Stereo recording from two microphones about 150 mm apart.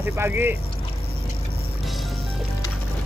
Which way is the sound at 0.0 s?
15° right (ahead or behind).